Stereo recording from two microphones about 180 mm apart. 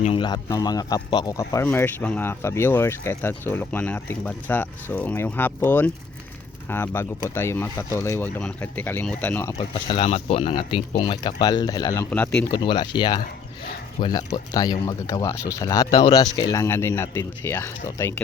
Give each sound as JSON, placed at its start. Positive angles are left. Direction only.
{"t": 0.0, "sound": "speech", "side_deg": 30}
{"t": 9.6, "sound": "speech", "side_deg": 30}
{"t": 12.1, "sound": "speech", "side_deg": 5}
{"t": 12.5, "sound": "speech", "side_deg": 25}